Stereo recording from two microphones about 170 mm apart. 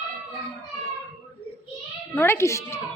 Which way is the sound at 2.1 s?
15° left (ahead or behind).